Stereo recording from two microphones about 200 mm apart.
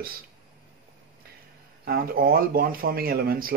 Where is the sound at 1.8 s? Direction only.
50° right (ahead or behind).